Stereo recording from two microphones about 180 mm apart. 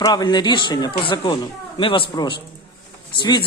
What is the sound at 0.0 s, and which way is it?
Speech, 20° left (ahead or behind).